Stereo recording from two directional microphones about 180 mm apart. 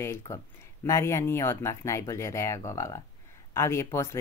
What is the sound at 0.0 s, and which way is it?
Speech, 15° left (ahead or behind).